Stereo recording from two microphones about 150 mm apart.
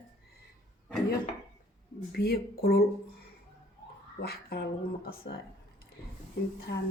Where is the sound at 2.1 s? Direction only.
90° left.